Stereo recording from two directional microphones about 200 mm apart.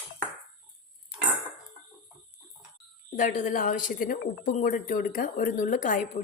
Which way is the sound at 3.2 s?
40° left (ahead or behind).